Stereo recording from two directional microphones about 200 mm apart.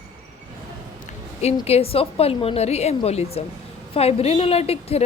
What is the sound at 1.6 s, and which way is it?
A woman's voice, 30° left (ahead or behind).